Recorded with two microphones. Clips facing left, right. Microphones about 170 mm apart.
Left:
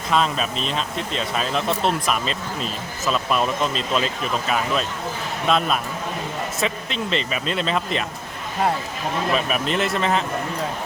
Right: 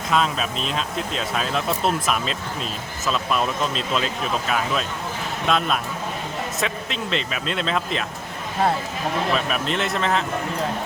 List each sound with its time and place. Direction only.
0.1 s speech: centre (ahead or behind)
9.3 s speech: 5° left (ahead or behind)